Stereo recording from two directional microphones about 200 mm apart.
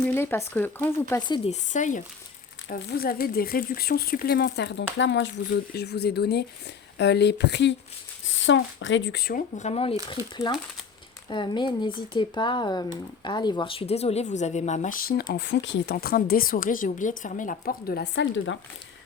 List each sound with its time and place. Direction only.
0.0 s speech: 10° left (ahead or behind)
1.5 s speech: 40° left (ahead or behind)
2.6 s a woman's voice: 60° left (ahead or behind)